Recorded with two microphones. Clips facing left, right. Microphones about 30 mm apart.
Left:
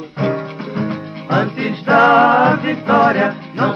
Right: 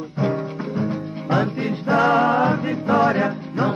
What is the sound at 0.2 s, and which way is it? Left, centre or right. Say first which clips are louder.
Music: left 4 dB; left.